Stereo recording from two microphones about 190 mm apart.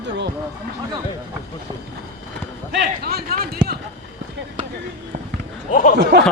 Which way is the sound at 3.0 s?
55° right (ahead or behind).